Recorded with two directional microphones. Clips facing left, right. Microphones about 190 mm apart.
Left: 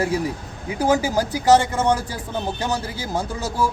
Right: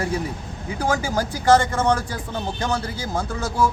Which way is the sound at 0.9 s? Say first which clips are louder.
Left 4 dB; 10° left (ahead or behind).